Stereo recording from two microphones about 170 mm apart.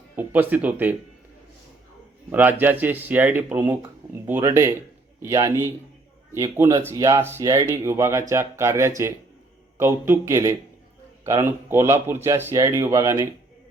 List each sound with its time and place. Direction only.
0.2 s speech: 10° right (ahead or behind)
2.3 s speech: 10° right (ahead or behind)